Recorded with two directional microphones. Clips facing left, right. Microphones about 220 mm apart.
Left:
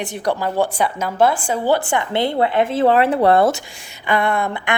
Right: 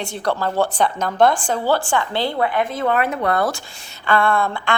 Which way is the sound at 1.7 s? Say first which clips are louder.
Left 2 dB; 20° left (ahead or behind).